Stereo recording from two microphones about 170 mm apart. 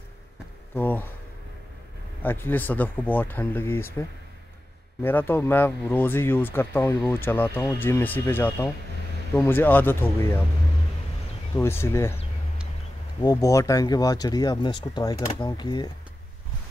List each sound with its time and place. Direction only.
0.7 s a sound: 10° left (ahead or behind)
2.2 s speech: 10° left (ahead or behind)
5.0 s speech: 10° left (ahead or behind)
11.5 s speech: 15° left (ahead or behind)
13.2 s speech: 20° left (ahead or behind)